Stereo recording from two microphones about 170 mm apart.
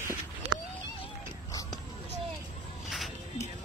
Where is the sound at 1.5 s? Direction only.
20° left (ahead or behind).